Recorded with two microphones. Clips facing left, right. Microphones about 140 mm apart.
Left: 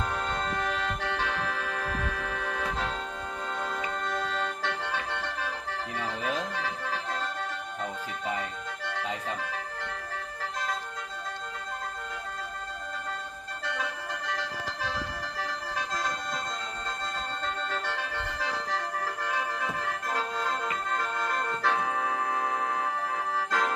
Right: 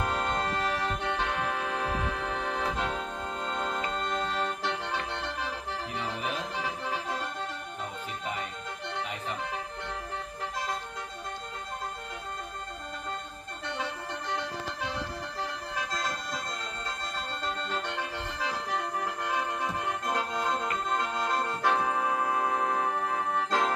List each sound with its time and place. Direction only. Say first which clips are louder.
0.6 s organ: right 1 dB; 15° right (ahead or behind)
4.4 s music: even; 20° right (ahead or behind)
19.8 s music: right 1 dB; 15° right (ahead or behind)
23.5 s accordion: right 1 dB; 25° right (ahead or behind)